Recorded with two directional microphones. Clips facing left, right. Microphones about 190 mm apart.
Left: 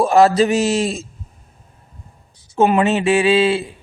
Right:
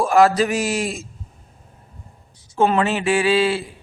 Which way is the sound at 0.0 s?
25° left (ahead or behind).